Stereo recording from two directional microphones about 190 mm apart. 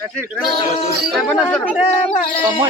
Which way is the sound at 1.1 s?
5° left (ahead or behind).